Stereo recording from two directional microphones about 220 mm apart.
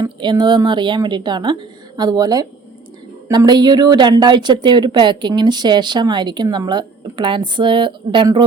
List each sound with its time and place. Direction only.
0.0 s a woman's voice: 20° right (ahead or behind)